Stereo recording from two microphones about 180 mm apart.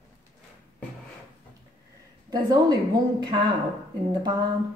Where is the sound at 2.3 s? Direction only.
25° right (ahead or behind).